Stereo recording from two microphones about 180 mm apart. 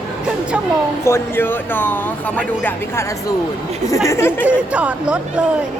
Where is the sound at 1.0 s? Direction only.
15° left (ahead or behind).